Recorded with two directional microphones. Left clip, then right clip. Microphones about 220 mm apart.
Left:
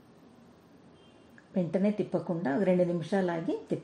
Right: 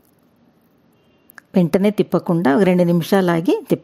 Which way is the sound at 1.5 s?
55° right (ahead or behind).